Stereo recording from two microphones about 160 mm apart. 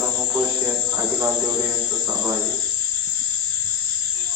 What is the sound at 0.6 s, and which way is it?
Speech, 15° right (ahead or behind).